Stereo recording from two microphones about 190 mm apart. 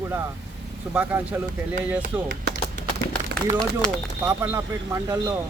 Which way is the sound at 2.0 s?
50° right (ahead or behind).